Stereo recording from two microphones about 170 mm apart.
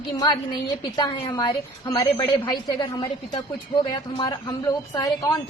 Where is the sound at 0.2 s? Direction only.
25° left (ahead or behind).